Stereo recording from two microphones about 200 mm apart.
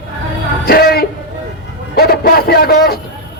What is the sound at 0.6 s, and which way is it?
A man's voice, 50° left (ahead or behind).